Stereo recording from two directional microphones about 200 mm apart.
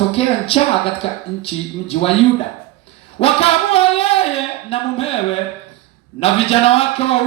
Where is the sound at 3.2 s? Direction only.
30° left (ahead or behind).